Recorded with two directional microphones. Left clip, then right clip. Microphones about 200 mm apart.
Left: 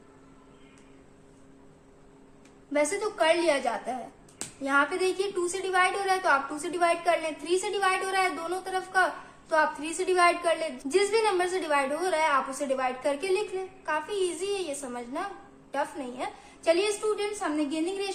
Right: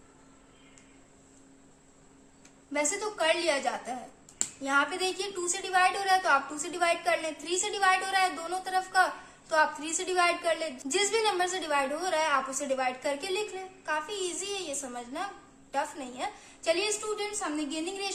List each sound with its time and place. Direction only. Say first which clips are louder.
2.7 s a woman's voice: left 4 dB; 15° right (ahead or behind)